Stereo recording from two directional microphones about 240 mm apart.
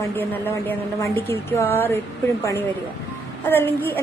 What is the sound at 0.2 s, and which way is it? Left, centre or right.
A woman's voice, centre.